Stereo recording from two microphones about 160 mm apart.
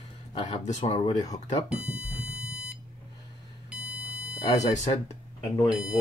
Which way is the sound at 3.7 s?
5° right (ahead or behind).